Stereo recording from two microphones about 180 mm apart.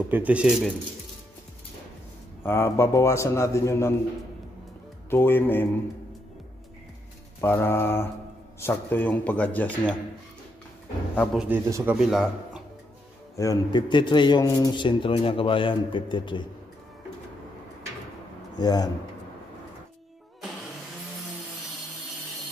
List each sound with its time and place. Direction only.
0.1 s speech: 10° right (ahead or behind)
2.4 s a man's voice: 15° left (ahead or behind)
5.1 s a man's voice: 10° left (ahead or behind)
7.3 s a man's voice: 15° left (ahead or behind)
11.3 s speech: 10° right (ahead or behind)
13.4 s speech: 20° left (ahead or behind)
18.6 s speech: 20° left (ahead or behind)